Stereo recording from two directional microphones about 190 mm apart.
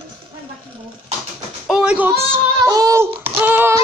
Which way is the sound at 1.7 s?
5° right (ahead or behind).